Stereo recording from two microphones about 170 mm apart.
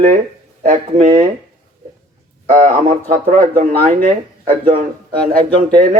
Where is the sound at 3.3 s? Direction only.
50° right (ahead or behind).